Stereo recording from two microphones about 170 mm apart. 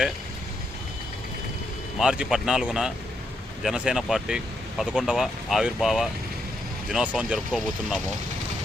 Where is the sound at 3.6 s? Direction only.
5° right (ahead or behind).